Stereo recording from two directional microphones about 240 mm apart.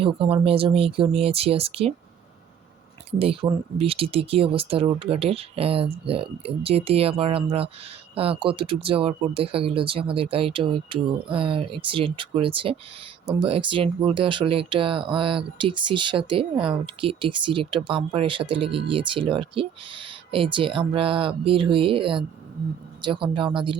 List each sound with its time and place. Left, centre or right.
0.0 s speech: right
3.1 s speech: right